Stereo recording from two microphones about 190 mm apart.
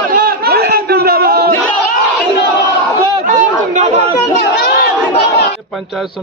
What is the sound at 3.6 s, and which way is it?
Chatter, 40° right (ahead or behind).